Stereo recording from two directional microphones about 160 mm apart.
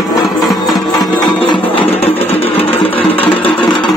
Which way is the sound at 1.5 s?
35° left (ahead or behind).